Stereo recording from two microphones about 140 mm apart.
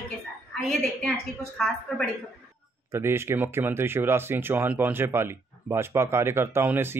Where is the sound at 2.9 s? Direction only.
20° right (ahead or behind).